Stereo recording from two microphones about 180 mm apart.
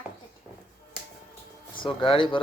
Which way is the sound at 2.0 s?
30° left (ahead or behind).